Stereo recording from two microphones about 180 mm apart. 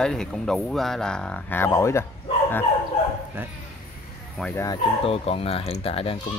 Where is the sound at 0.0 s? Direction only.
5° left (ahead or behind).